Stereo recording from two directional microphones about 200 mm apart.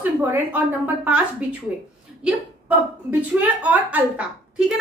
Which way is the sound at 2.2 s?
10° right (ahead or behind).